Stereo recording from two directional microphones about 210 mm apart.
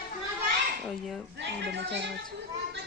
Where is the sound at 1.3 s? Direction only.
55° right (ahead or behind).